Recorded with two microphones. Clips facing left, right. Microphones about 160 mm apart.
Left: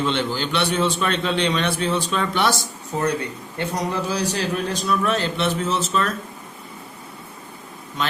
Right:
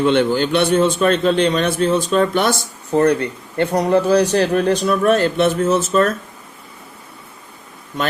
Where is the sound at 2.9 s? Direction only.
60° right (ahead or behind).